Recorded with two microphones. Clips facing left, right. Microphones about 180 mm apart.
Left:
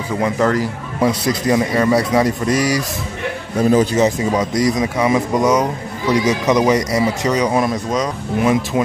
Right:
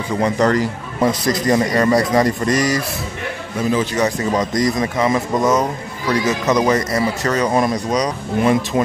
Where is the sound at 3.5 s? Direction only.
40° left (ahead or behind).